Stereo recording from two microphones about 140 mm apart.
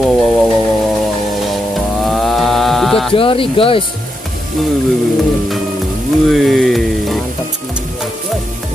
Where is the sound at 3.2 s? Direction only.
40° left (ahead or behind).